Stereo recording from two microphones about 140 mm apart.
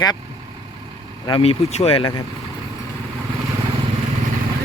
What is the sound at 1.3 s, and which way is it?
Speech, 45° left (ahead or behind).